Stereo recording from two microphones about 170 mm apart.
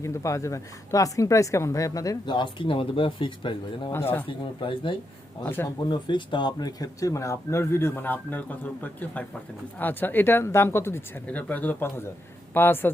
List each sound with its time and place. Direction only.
0.0 s speech: 15° left (ahead or behind)
3.9 s speech: 10° left (ahead or behind)
4.6 s speech: 30° left (ahead or behind)
5.5 s speech: 15° left (ahead or behind)
5.9 s speech: 30° left (ahead or behind); by 12.9 s 10° left (ahead or behind)